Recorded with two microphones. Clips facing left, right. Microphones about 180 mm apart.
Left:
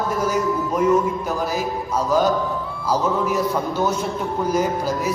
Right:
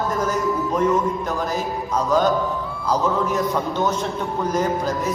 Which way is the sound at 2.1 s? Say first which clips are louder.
Even; 10° left (ahead or behind).